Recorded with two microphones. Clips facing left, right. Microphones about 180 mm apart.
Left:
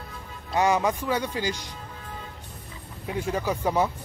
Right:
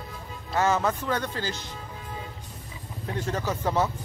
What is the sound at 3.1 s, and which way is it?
Speech, 10° left (ahead or behind).